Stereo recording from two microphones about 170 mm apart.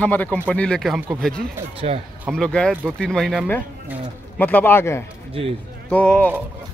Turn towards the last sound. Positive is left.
turn(degrees=10)  # may be behind; listen again after turning